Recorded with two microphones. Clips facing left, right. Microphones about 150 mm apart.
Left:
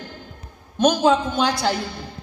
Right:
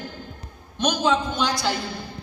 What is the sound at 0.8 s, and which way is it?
Speech, 45° left (ahead or behind).